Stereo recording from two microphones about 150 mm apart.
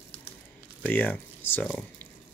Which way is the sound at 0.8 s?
10° left (ahead or behind).